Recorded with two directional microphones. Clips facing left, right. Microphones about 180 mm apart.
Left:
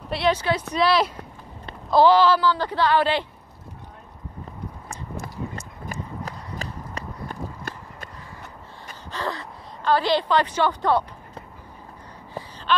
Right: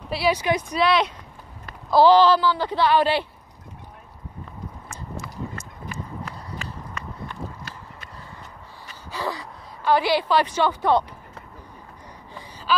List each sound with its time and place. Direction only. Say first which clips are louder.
0.1 s a woman's voice: even; 10° right (ahead or behind)
0.7 s speech: left 1 dB; centre (ahead or behind)
1.9 s a woman's voice: right 1 dB; 10° right (ahead or behind)
5.6 s run: left 1 dB; 35° left (ahead or behind)
9.1 s gasp: even; 5° right (ahead or behind)
9.9 s a woman's voice: even; 10° right (ahead or behind)